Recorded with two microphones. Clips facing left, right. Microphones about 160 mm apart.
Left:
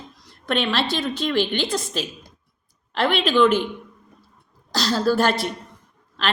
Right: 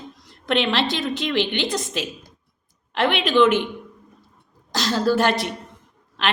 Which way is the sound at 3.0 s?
40° left (ahead or behind).